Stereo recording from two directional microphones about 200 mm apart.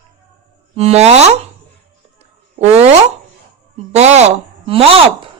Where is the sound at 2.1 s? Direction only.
30° right (ahead or behind).